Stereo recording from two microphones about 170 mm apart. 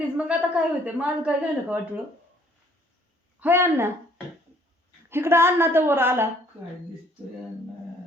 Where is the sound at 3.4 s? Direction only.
15° right (ahead or behind).